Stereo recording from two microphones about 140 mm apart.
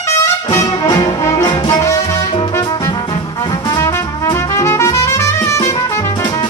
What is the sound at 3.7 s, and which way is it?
Brass instrument, 20° left (ahead or behind).